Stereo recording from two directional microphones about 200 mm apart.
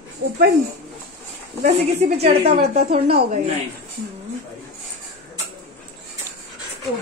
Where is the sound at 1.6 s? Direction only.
35° right (ahead or behind).